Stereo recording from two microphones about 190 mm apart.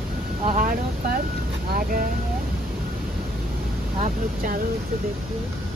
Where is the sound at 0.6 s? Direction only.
45° right (ahead or behind).